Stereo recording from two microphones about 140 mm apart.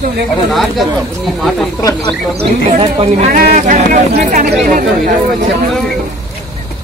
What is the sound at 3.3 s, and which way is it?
Speech, 70° right (ahead or behind).